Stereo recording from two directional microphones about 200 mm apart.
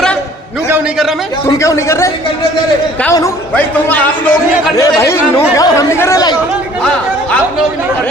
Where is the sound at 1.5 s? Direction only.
15° left (ahead or behind).